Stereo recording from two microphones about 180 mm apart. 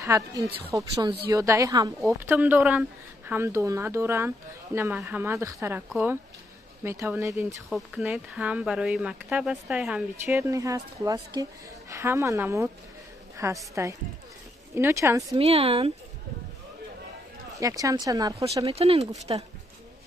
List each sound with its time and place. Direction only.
0.0 s speech: 20° right (ahead or behind)
2.2 s speech: 10° right (ahead or behind)
7.7 s speech: 5° right (ahead or behind)
10.3 s speech: 15° right (ahead or behind)
15.3 s speech: 35° right (ahead or behind)
17.6 s speech: 20° right (ahead or behind)
18.8 s speech: 35° right (ahead or behind)